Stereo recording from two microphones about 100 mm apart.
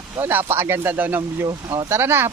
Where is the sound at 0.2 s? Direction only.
25° right (ahead or behind).